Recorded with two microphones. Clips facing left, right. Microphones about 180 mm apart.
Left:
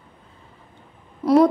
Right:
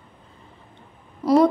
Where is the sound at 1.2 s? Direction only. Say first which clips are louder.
Left 1 dB; centre (ahead or behind).